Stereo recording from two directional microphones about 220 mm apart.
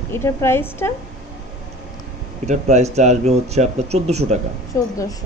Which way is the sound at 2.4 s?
30° right (ahead or behind).